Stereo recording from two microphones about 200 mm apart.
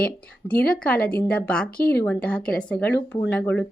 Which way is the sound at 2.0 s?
5° left (ahead or behind).